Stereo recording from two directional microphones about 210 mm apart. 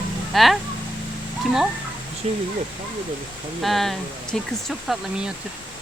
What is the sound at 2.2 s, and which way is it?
Speech, 30° right (ahead or behind).